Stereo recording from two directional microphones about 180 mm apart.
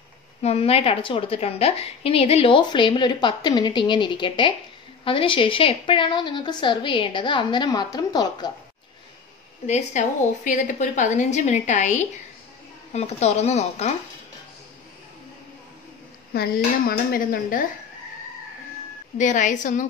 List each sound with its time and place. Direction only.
0.4 s a woman's voice: 35° left (ahead or behind)
9.7 s a woman's voice: 40° left (ahead or behind)
16.3 s speech: 55° left (ahead or behind)
19.1 s speech: 45° left (ahead or behind)